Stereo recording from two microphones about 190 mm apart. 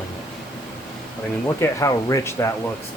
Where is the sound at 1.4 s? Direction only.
15° left (ahead or behind).